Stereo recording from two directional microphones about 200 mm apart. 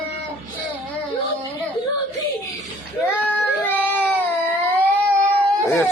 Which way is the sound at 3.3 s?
10° left (ahead or behind).